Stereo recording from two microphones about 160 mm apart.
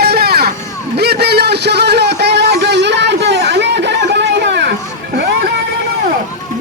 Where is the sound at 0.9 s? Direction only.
90° right.